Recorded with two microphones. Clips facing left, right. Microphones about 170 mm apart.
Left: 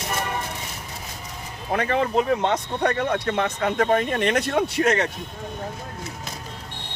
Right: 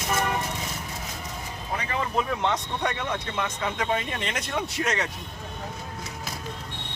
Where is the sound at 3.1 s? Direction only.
60° left (ahead or behind).